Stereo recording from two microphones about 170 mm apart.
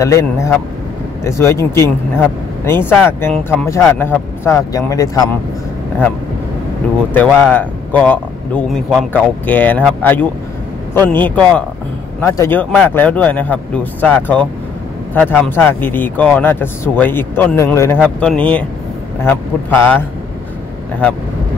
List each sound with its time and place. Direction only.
0.0 s a man's voice: 15° left (ahead or behind)
7.2 s a man's voice: 10° left (ahead or behind)